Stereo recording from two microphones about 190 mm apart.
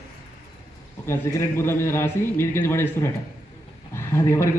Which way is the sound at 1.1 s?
15° left (ahead or behind).